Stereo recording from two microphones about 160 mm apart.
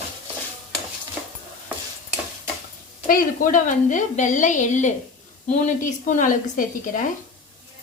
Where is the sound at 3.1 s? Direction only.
55° left (ahead or behind).